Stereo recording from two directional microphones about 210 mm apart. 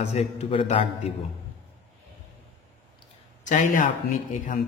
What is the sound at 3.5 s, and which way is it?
Speech, 40° left (ahead or behind).